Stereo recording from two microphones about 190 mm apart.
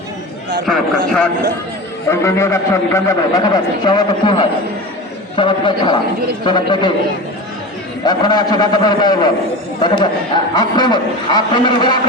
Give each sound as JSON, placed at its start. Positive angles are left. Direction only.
{"t": 0.6, "sound": "speech", "side_deg": 0}
{"t": 2.0, "sound": "a man's voice", "side_deg": 15}
{"t": 8.0, "sound": "a man's voice", "side_deg": 20}